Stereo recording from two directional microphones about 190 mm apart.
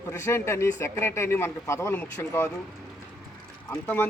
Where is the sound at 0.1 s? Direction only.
15° left (ahead or behind).